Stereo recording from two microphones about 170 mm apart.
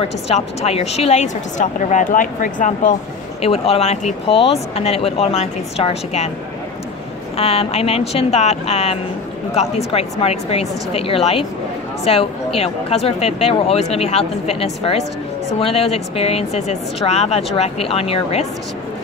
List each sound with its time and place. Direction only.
0.0 s a woman's voice: 35° left (ahead or behind)
3.4 s speech: 35° left (ahead or behind)
7.3 s speech: 35° left (ahead or behind)